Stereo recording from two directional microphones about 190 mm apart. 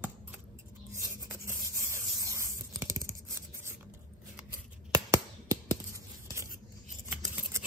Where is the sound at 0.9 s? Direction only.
15° right (ahead or behind).